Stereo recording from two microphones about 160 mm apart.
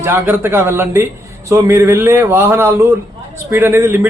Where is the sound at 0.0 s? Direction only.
15° right (ahead or behind).